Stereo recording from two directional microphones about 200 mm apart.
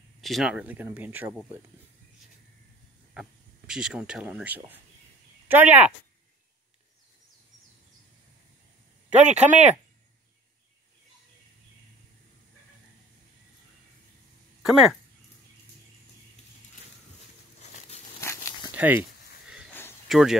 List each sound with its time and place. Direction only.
0.2 s speech: centre (ahead or behind)
3.2 s speech: 5° right (ahead or behind)
9.2 s speech: 35° right (ahead or behind)
14.6 s speech: centre (ahead or behind)
18.2 s a sound: 15° left (ahead or behind)
18.6 s a sound: 10° right (ahead or behind)
20.1 s speech: centre (ahead or behind)